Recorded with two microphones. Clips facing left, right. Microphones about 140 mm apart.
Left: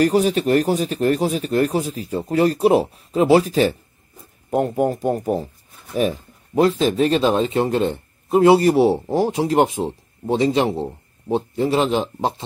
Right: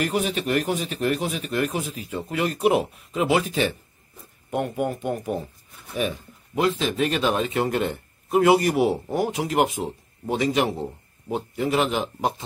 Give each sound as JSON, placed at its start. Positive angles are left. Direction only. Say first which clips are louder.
{"t": 0.0, "sound": "speech", "louder": "left 8 dB", "side_deg": 40}